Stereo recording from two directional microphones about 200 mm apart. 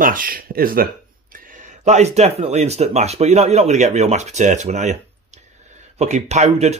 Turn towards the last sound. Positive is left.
turn(degrees=-35)  # may be behind; listen again after turning